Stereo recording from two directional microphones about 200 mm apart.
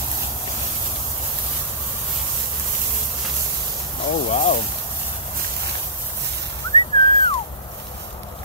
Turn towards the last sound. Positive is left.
turn(degrees=25)  # may be behind; listen again after turning